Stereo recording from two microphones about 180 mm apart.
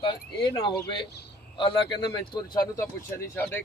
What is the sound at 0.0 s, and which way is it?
A man's voice, 25° left (ahead or behind).